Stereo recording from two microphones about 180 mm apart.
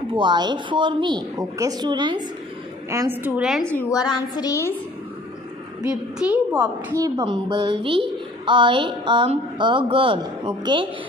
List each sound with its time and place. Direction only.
0.1 s a woman's voice: 25° right (ahead or behind)
2.9 s a woman's voice: 15° right (ahead or behind)
3.7 s a woman's voice: 20° left (ahead or behind)
6.1 s a woman's voice: 5° right (ahead or behind)
7.2 s a woman's voice: 30° right (ahead or behind)